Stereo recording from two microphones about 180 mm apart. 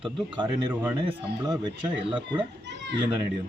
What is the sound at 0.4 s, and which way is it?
Speech, 5° right (ahead or behind).